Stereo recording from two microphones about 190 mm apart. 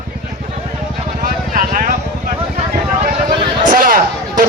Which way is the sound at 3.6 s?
45° right (ahead or behind).